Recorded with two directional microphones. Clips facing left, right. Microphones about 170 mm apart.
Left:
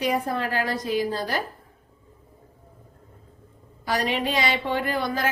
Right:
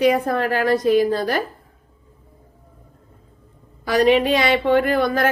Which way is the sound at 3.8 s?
70° right (ahead or behind).